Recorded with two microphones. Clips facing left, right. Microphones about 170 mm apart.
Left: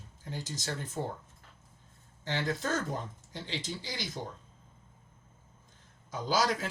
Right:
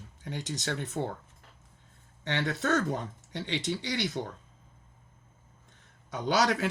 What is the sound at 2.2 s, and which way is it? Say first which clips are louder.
Speech: right 3 dB; 70° right (ahead or behind).